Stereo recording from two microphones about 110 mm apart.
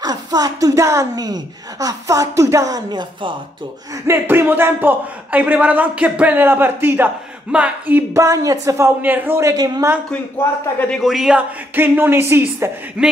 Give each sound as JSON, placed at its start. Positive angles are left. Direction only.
{"t": 0.0, "sound": "a woman's voice", "side_deg": -35}
{"t": 4.1, "sound": "speech", "side_deg": -20}
{"t": 8.1, "sound": "speech", "side_deg": -30}
{"t": 11.0, "sound": "a man's voice", "side_deg": 0}
{"t": 11.7, "sound": "speech", "side_deg": -20}
{"t": 13.0, "sound": "speech", "side_deg": -10}